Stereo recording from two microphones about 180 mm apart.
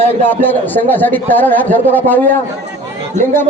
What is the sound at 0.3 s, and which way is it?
Speech, 10° left (ahead or behind).